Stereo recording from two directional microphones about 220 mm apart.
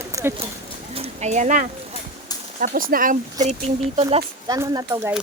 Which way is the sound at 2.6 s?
40° right (ahead or behind).